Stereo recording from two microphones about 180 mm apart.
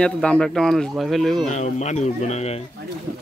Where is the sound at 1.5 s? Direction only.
40° left (ahead or behind).